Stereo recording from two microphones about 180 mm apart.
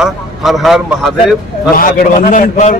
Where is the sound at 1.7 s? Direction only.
50° left (ahead or behind).